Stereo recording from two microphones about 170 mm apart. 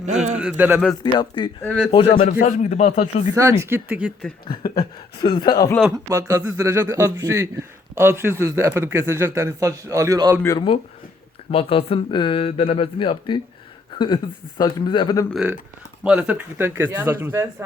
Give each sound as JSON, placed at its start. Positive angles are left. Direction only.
{"t": 0.0, "sound": "a man's voice", "side_deg": -40}
{"t": 0.3, "sound": "speech", "side_deg": -10}
{"t": 1.0, "sound": "speech", "side_deg": 25}
{"t": 2.4, "sound": "speech", "side_deg": 45}
{"t": 3.6, "sound": "speech", "side_deg": -15}
{"t": 4.4, "sound": "speech", "side_deg": 25}
{"t": 6.1, "sound": "speech", "side_deg": -20}
{"t": 10.4, "sound": "speech", "side_deg": 20}
{"t": 11.5, "sound": "speech", "side_deg": 35}
{"t": 14.6, "sound": "speech", "side_deg": 25}
{"t": 15.3, "sound": "speech", "side_deg": -5}